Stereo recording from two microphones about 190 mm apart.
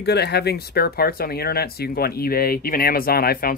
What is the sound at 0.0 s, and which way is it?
Speech, 60° left (ahead or behind).